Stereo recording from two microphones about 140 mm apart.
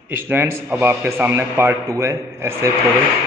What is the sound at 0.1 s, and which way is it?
A man's voice, 15° right (ahead or behind).